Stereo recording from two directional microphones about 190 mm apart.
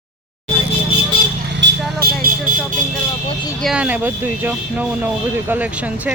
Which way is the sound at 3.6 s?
5° right (ahead or behind).